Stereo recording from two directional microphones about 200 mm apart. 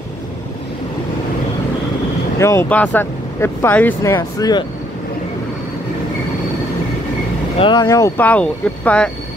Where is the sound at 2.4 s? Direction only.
10° left (ahead or behind).